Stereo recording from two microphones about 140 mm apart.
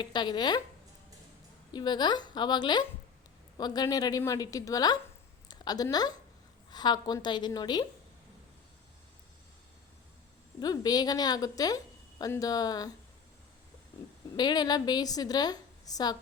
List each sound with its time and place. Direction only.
0.0 s a woman's voice: 30° left (ahead or behind)
1.7 s a woman's voice: 30° left (ahead or behind)
10.6 s a woman's voice: 30° left (ahead or behind)
14.3 s a woman's voice: 30° left (ahead or behind)